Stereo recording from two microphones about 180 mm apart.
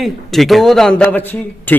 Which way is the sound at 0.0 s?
Centre (ahead or behind).